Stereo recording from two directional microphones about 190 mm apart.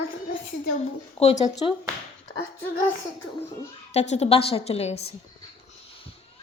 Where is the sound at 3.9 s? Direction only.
35° left (ahead or behind).